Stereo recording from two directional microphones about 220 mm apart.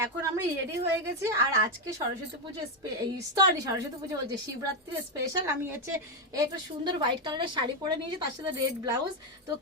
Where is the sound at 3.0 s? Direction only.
15° right (ahead or behind).